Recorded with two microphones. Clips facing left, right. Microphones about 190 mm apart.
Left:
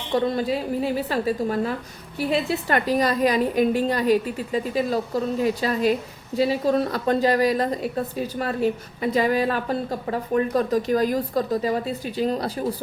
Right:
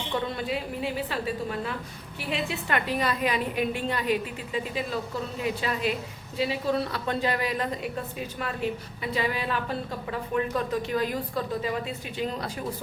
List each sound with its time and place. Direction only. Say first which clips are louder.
0.1 s a woman's voice: left 8 dB; 35° left (ahead or behind)